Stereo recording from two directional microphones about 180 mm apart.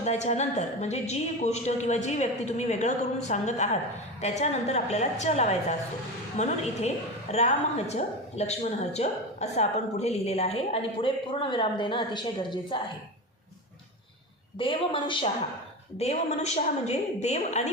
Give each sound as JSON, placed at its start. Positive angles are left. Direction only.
{"t": 0.0, "sound": "a woman's voice", "side_deg": 40}
{"t": 14.6, "sound": "a woman's voice", "side_deg": 30}